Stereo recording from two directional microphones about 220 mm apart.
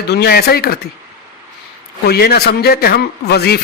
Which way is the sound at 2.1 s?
45° left (ahead or behind).